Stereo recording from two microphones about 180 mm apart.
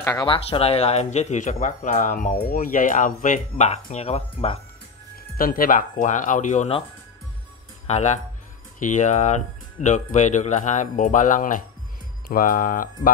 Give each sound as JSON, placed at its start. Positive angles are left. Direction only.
{"t": 0.0, "sound": "speech", "side_deg": 20}
{"t": 5.4, "sound": "speech", "side_deg": 55}
{"t": 7.8, "sound": "speech", "side_deg": 40}